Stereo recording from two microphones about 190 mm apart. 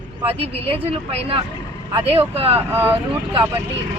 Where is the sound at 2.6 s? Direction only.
10° right (ahead or behind).